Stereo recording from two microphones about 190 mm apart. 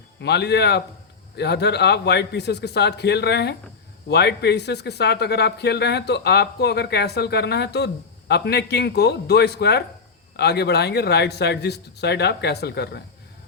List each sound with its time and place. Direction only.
0.2 s speech: 60° left (ahead or behind)